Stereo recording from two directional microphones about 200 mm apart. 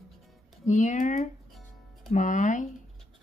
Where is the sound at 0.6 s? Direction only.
40° left (ahead or behind).